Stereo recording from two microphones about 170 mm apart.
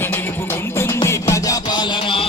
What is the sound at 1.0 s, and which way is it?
Music, 15° left (ahead or behind).